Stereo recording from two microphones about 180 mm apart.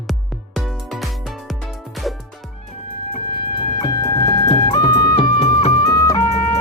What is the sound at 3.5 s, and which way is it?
Music, 25° left (ahead or behind).